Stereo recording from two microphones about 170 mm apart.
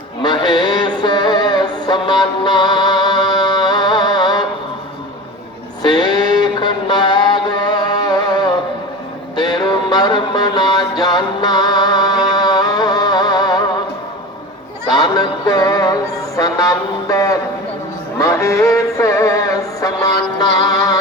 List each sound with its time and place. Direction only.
0.2 s music: 25° left (ahead or behind)
5.8 s a sound: 25° left (ahead or behind)
9.3 s music: 25° left (ahead or behind)
14.9 s music: 25° left (ahead or behind)
16.4 s a sound: 20° left (ahead or behind)
18.2 s music: 15° left (ahead or behind)